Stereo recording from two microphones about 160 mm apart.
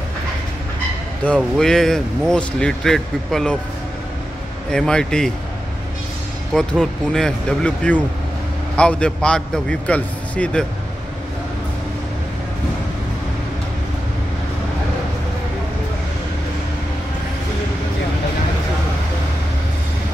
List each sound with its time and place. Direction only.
1.2 s speech: 5° left (ahead or behind)
4.6 s speech: 5° left (ahead or behind)
6.5 s a man's voice: 5° left (ahead or behind)